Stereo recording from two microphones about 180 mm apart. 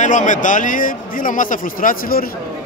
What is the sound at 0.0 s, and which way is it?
A man's voice, 45° left (ahead or behind).